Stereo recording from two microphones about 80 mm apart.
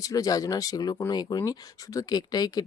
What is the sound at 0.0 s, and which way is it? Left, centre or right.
Speech, left.